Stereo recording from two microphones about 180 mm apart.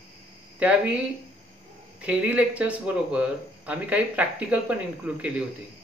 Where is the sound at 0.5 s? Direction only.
5° right (ahead or behind).